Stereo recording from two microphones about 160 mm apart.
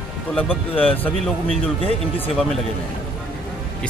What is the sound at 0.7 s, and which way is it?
Speech, 10° left (ahead or behind).